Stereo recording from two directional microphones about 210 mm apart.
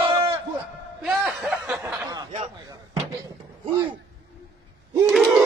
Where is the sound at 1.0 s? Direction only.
Centre (ahead or behind).